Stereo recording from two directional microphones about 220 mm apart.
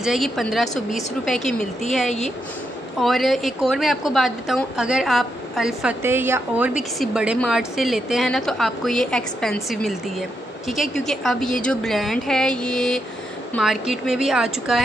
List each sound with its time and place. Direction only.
0.0 s a woman's voice: centre (ahead or behind)
2.0 s speech: 30° left (ahead or behind)
3.0 s a woman's voice: centre (ahead or behind)